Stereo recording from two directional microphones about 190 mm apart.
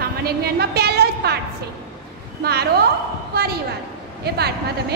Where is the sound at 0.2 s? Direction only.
55° right (ahead or behind).